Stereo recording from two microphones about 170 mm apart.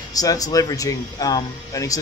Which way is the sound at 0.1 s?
20° left (ahead or behind).